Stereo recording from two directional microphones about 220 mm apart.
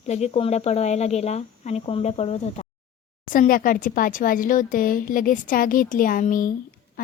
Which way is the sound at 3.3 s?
40° left (ahead or behind).